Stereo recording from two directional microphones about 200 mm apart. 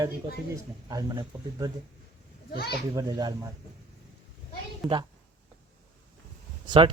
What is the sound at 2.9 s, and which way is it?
Speech, 20° right (ahead or behind).